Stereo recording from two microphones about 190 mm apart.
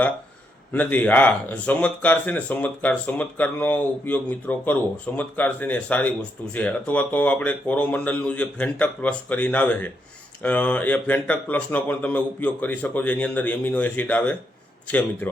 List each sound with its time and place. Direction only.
0.7 s speech: 10° left (ahead or behind)